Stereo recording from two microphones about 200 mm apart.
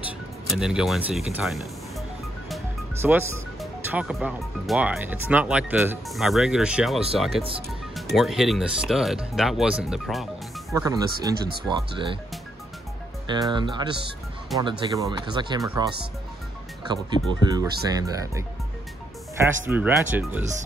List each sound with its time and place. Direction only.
0.5 s speech: centre (ahead or behind)
3.0 s speech: 10° right (ahead or behind)
10.7 s speech: 15° right (ahead or behind)
13.3 s speech: 25° right (ahead or behind)
17.3 s speech: 20° right (ahead or behind)